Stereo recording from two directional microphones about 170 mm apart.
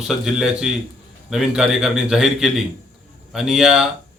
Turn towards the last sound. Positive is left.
turn(degrees=-5)  # may be behind; listen again after turning